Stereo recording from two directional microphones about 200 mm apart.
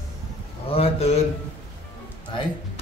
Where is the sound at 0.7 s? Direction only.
30° left (ahead or behind).